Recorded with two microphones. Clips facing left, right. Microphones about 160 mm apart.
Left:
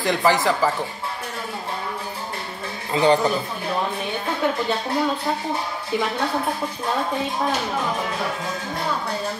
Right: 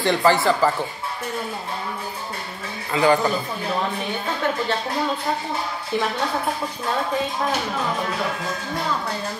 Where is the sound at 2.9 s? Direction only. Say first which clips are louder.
Left 1 dB; 30° left (ahead or behind).